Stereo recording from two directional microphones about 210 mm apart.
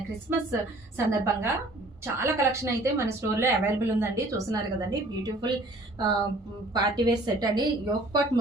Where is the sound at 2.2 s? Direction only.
15° right (ahead or behind).